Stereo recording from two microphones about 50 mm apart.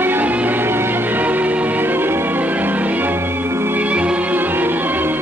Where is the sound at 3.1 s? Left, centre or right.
Right.